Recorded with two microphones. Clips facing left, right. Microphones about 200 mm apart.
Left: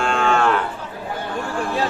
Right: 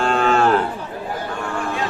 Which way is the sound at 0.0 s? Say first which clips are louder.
Right 2 dB; 35° right (ahead or behind).